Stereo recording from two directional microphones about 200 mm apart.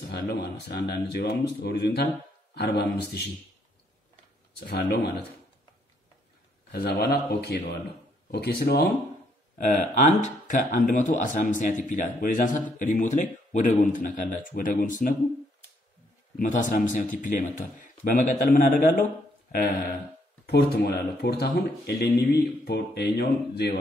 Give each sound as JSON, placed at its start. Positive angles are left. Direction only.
{"t": 0.1, "sound": "speech", "side_deg": 55}
{"t": 4.6, "sound": "speech", "side_deg": 55}
{"t": 6.7, "sound": "speech", "side_deg": 55}
{"t": 9.6, "sound": "speech", "side_deg": 35}
{"t": 16.3, "sound": "speech", "side_deg": 40}
{"t": 20.4, "sound": "speech", "side_deg": 55}